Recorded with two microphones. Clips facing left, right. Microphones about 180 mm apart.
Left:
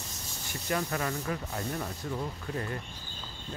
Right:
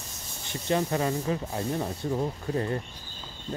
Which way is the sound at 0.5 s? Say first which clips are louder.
Right 5 dB; 25° right (ahead or behind).